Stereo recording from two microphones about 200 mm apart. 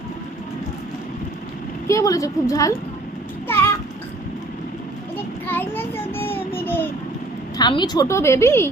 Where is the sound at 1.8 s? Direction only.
15° left (ahead or behind).